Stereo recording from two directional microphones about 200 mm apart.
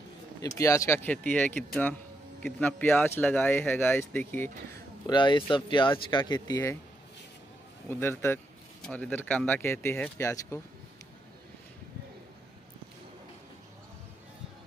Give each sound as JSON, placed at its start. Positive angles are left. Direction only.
{"t": 0.4, "sound": "speech", "side_deg": 15}
{"t": 5.0, "sound": "speech", "side_deg": 25}
{"t": 7.9, "sound": "speech", "side_deg": 10}